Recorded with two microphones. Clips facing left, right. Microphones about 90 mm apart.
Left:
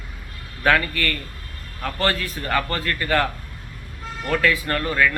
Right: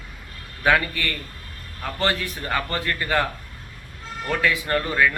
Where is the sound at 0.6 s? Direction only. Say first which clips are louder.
Left 1 dB; 15° right (ahead or behind).